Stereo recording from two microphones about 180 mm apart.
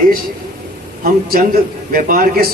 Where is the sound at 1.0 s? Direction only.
55° right (ahead or behind).